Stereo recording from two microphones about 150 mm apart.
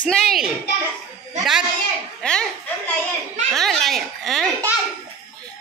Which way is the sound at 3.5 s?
Centre (ahead or behind).